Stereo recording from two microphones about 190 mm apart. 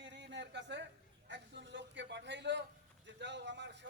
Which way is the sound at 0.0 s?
70° right (ahead or behind).